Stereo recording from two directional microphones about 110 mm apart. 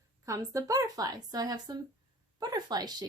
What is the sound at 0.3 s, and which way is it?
A woman's voice, 30° right (ahead or behind).